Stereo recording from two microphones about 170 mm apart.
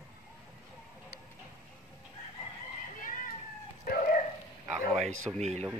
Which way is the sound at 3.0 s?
55° left (ahead or behind).